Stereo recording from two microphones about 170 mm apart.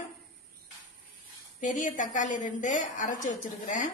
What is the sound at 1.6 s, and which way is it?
Speech, 50° left (ahead or behind).